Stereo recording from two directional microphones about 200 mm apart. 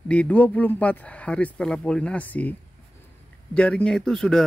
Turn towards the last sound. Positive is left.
turn(degrees=0)  # may be behind; listen again after turning